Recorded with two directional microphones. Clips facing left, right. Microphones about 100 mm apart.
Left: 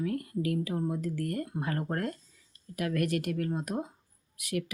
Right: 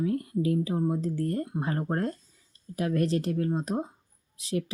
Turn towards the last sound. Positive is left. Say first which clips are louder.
# right 3 dB
turn(degrees=-30)  # may be behind; listen again after turning